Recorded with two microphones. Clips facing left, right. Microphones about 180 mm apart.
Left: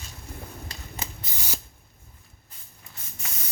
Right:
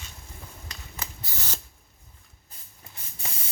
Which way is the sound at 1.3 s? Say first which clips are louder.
Left 1 dB; 20° left (ahead or behind).